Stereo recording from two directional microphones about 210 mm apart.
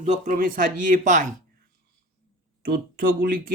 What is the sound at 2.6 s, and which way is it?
Speech, 45° right (ahead or behind).